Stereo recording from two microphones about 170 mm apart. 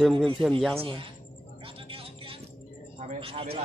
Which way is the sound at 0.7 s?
30° right (ahead or behind).